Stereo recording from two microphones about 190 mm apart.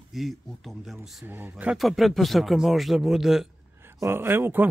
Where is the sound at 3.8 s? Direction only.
15° right (ahead or behind).